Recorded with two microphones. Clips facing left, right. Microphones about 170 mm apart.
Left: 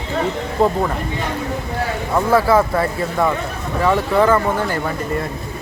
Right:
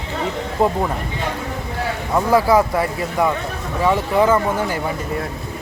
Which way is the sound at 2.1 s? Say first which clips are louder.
Even; 15° right (ahead or behind).